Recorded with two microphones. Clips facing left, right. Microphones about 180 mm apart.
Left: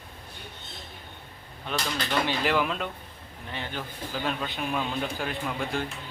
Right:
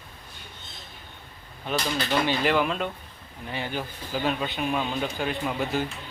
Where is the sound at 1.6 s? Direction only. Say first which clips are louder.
Right 3 dB; centre (ahead or behind).